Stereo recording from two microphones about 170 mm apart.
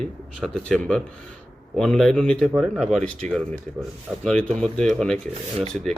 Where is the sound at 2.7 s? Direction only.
Centre (ahead or behind).